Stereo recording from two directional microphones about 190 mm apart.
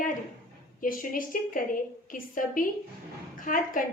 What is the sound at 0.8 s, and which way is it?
A woman's voice, 45° left (ahead or behind).